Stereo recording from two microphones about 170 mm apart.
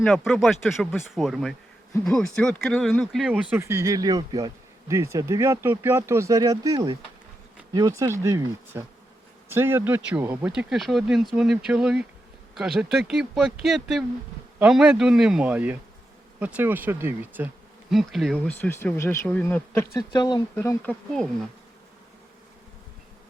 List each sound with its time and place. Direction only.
0.0 s speech: centre (ahead or behind)
17.9 s speech: centre (ahead or behind)
18.4 s speech: 10° left (ahead or behind)